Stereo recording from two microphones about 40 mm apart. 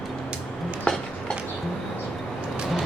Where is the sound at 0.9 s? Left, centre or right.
Left.